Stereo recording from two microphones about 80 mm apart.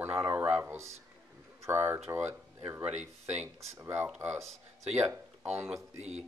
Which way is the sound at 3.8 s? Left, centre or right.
Right.